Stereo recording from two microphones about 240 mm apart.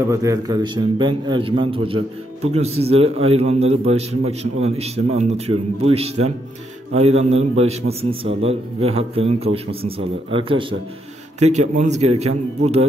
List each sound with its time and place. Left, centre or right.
0.1 s a man's voice: centre